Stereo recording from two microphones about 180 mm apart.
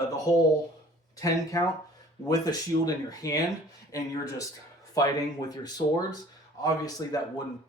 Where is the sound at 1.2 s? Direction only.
20° left (ahead or behind).